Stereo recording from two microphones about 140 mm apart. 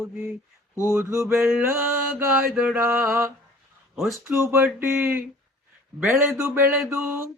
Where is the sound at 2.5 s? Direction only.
5° right (ahead or behind).